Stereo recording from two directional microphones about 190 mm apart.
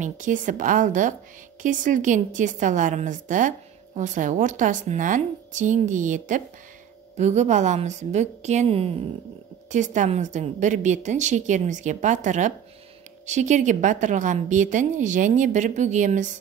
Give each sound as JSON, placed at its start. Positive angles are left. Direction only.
{"t": 0.0, "sound": "a woman's voice", "side_deg": -40}